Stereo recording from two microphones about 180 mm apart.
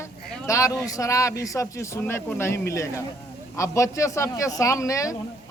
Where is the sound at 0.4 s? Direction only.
20° left (ahead or behind).